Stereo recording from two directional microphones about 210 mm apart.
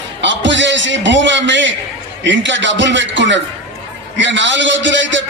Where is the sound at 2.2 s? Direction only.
60° right (ahead or behind).